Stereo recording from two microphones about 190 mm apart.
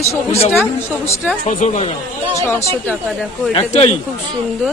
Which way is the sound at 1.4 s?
40° left (ahead or behind).